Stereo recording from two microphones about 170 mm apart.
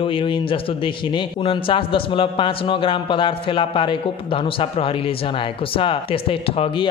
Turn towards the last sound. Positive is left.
turn(degrees=35)  # may be behind; listen again after turning